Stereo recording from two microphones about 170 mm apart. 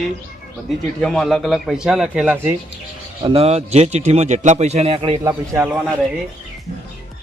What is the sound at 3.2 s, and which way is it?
A man's voice, 35° right (ahead or behind).